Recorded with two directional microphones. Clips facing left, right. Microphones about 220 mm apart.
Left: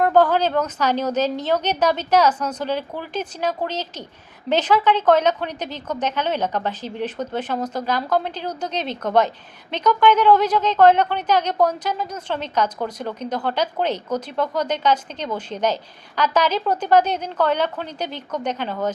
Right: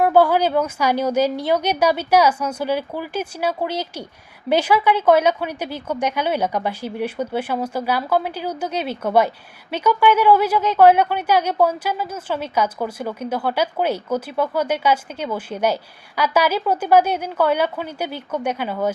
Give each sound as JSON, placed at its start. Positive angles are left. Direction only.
{"t": 0.0, "sound": "speech", "side_deg": -10}